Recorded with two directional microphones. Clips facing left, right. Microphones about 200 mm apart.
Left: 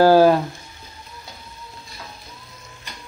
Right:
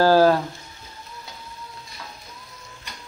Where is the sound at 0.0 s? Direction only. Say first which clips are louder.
Left 3 dB; 15° left (ahead or behind).